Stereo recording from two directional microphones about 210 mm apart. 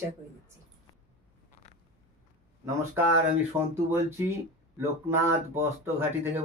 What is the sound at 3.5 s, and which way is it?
Speech, 10° right (ahead or behind).